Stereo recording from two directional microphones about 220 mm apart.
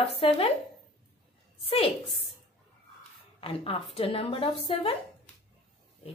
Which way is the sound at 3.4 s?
25° left (ahead or behind).